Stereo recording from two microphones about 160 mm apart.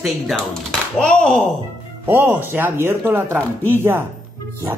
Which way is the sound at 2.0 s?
10° right (ahead or behind).